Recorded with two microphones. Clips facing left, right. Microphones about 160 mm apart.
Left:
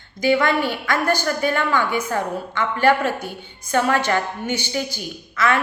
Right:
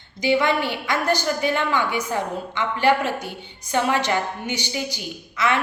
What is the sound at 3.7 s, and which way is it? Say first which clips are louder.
A woman's voice: left 2 dB; 15° right (ahead or behind).